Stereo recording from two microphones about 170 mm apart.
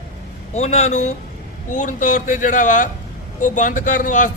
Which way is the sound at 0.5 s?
40° left (ahead or behind).